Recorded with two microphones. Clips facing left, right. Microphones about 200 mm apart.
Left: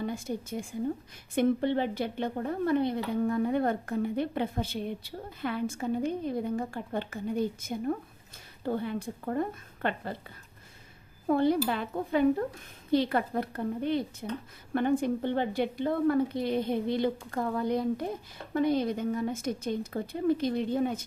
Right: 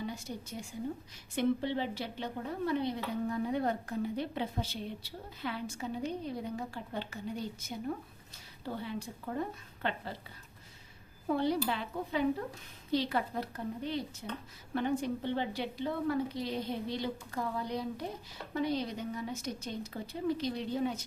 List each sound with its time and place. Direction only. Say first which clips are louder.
0.0 s a woman's voice: left 6 dB; 50° left (ahead or behind)
11.3 s a woman's voice: left 5 dB; 50° left (ahead or behind)